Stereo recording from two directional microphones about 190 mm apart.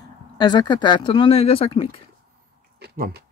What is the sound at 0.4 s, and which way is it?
Speech, 20° left (ahead or behind).